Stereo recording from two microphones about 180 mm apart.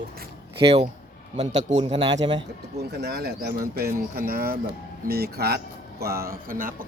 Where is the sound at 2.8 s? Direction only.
65° right (ahead or behind).